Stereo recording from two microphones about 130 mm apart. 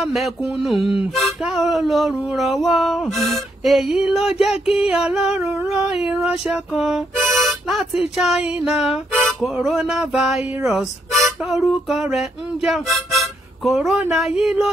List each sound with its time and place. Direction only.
0.0 s music: centre (ahead or behind)
0.7 s music: 45° left (ahead or behind)
1.1 s music: centre (ahead or behind)
8.8 s speech: centre (ahead or behind)
9.5 s music: 5° right (ahead or behind)